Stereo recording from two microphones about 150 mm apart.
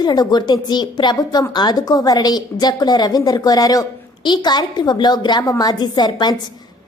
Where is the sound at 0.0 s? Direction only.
25° left (ahead or behind).